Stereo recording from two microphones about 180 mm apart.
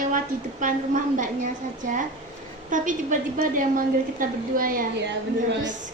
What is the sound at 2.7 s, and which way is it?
A woman's voice, 45° right (ahead or behind).